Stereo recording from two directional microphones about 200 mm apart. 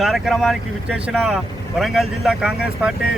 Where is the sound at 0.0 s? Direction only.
Centre (ahead or behind).